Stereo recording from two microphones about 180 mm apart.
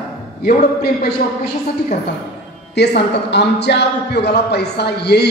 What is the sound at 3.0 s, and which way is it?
Speech, 70° left (ahead or behind).